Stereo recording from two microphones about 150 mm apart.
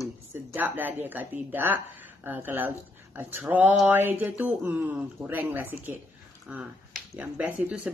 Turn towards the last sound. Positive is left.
turn(degrees=-10)  # may be behind; listen again after turning